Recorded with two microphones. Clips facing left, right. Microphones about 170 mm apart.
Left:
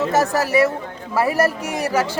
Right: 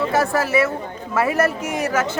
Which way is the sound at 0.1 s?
40° left (ahead or behind).